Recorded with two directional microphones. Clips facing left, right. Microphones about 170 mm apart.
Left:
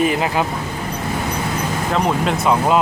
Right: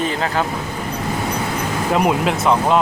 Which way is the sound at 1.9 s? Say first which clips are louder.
Right 2 dB; 10° right (ahead or behind).